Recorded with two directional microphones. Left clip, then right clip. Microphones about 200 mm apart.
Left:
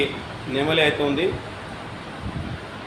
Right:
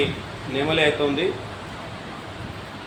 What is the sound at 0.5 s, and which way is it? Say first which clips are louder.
Speech: left 1 dB; 15° left (ahead or behind).